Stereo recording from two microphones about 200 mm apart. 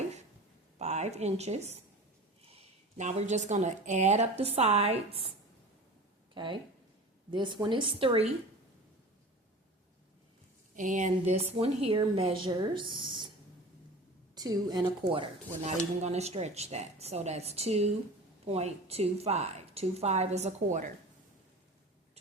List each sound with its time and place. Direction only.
0.8 s a woman's voice: 35° right (ahead or behind)
3.0 s speech: 35° right (ahead or behind)
6.3 s speech: 25° right (ahead or behind)
10.8 s a woman's voice: 40° right (ahead or behind); by 13.3 s 25° right (ahead or behind)
14.3 s speech: 20° right (ahead or behind); by 20.9 s 40° right (ahead or behind)